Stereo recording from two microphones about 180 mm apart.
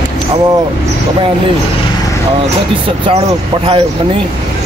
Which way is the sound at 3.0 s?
30° right (ahead or behind).